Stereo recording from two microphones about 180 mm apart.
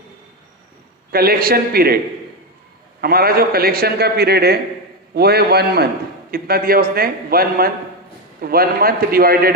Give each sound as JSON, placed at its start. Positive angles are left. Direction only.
{"t": 1.1, "sound": "a man's voice", "side_deg": -60}
{"t": 3.0, "sound": "a man's voice", "side_deg": -55}